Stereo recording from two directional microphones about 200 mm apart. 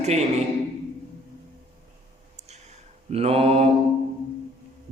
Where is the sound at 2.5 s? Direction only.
35° right (ahead or behind).